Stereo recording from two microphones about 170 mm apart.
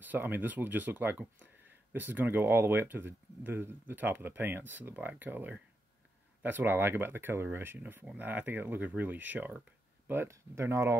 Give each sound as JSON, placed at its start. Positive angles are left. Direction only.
{"t": 0.0, "sound": "speech", "side_deg": -10}